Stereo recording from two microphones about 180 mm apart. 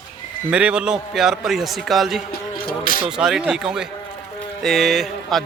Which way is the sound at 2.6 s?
50° left (ahead or behind).